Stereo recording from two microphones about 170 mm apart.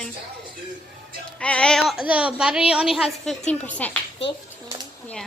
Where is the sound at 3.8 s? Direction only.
10° left (ahead or behind).